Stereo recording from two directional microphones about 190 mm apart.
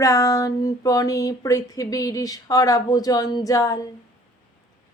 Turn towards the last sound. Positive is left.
turn(degrees=15)  # may be behind; listen again after turning